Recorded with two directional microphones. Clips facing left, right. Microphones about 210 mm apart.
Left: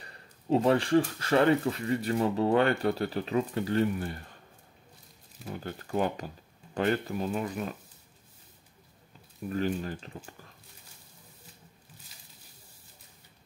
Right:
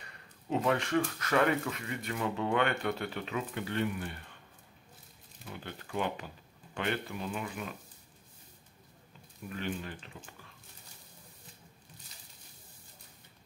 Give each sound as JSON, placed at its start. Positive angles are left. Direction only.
{"t": 0.0, "sound": "speech", "side_deg": 35}
{"t": 5.4, "sound": "speech", "side_deg": 40}
{"t": 9.5, "sound": "speech", "side_deg": 40}